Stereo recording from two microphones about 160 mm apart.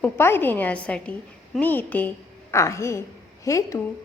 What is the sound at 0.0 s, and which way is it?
A woman's voice, 15° left (ahead or behind).